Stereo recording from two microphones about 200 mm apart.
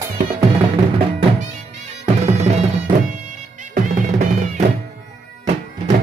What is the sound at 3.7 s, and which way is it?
Music, 35° right (ahead or behind).